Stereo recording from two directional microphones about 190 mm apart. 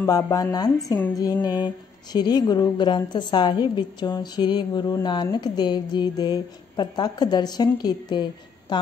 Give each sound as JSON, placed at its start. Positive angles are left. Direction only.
{"t": 0.0, "sound": "a woman's voice", "side_deg": 20}